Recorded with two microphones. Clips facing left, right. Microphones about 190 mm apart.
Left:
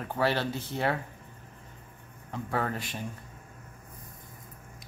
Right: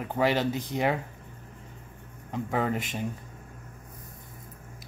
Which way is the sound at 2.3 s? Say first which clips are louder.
Right 3 dB; 15° right (ahead or behind).